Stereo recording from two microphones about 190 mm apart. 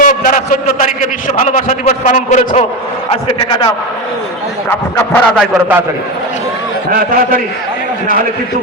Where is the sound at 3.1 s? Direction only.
25° left (ahead or behind).